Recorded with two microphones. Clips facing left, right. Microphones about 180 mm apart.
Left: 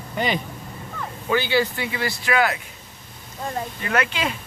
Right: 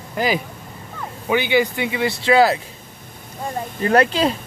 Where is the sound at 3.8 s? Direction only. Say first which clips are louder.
Right 9 dB; 35° right (ahead or behind).